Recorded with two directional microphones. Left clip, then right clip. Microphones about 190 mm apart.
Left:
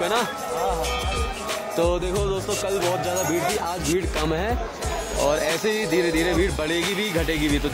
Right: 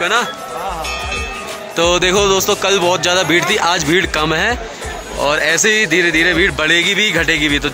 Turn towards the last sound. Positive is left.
turn(degrees=5)  # may be behind; listen again after turning